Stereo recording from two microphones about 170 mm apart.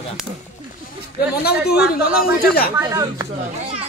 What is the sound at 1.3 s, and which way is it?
Speech, 70° left (ahead or behind).